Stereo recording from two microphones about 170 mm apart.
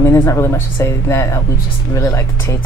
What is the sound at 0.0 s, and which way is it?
Speech, 15° left (ahead or behind).